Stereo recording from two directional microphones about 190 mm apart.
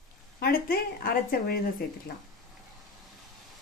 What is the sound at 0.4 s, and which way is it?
Speech, 50° left (ahead or behind).